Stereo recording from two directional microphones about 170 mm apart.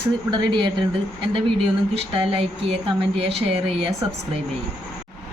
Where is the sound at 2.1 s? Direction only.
35° right (ahead or behind).